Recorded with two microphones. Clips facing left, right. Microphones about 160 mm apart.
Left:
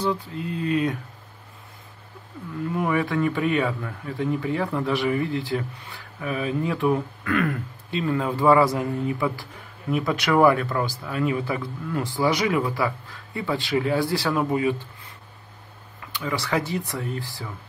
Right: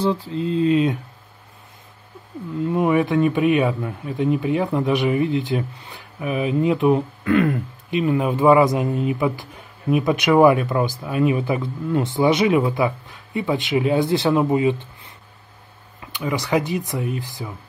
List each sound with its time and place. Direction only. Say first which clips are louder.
0.0 s speech: right 5 dB; 30° right (ahead or behind)
2.7 s speech: right 6 dB; 20° right (ahead or behind)
16.1 s speech: right 5 dB; 20° right (ahead or behind)